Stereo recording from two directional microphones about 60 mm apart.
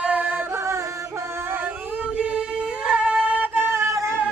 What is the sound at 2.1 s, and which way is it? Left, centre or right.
Singing, centre.